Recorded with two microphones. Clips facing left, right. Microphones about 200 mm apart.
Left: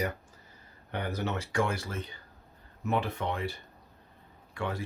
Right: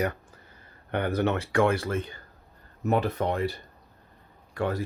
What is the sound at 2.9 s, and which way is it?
Speech, 40° right (ahead or behind).